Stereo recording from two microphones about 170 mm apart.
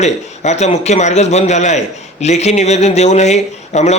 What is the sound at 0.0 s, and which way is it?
Speech, 40° left (ahead or behind).